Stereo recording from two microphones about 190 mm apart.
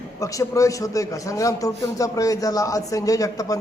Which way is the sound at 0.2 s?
15° left (ahead or behind).